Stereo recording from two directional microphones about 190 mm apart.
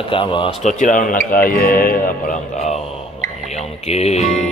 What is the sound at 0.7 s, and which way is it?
Speech, 40° left (ahead or behind).